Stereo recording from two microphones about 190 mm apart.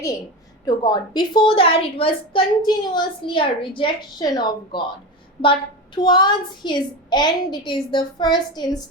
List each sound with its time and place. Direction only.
0.6 s a woman's voice: 20° left (ahead or behind)